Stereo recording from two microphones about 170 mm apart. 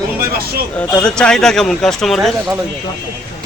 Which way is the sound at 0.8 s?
5° left (ahead or behind).